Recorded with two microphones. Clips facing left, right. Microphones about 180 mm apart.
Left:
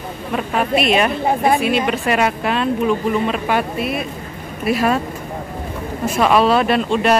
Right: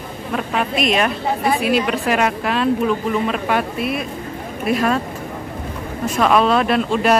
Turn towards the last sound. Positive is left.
turn(degrees=0)  # may be behind; listen again after turning